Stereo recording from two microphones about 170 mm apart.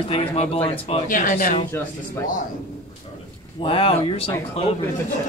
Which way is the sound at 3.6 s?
30° left (ahead or behind).